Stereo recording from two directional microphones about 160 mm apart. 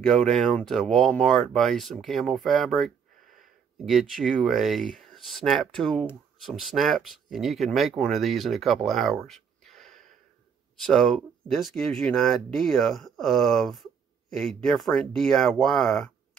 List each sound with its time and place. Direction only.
0.0 s speech: 5° left (ahead or behind)